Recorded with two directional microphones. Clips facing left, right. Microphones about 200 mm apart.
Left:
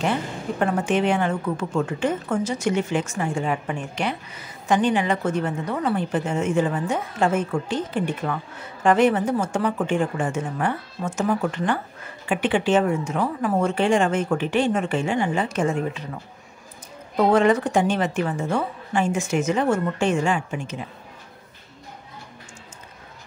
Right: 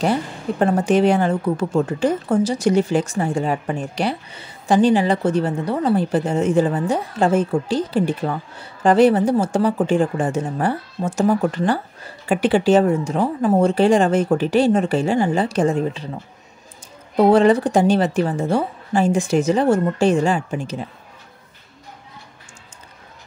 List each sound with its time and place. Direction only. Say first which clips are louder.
0.0 s a woman's voice: right 4 dB; 35° right (ahead or behind)
17.2 s a woman's voice: right 4 dB; 30° right (ahead or behind)